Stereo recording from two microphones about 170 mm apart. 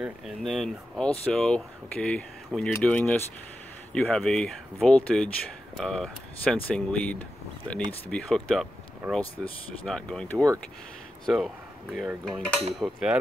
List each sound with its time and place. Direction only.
0.0 s speech: centre (ahead or behind)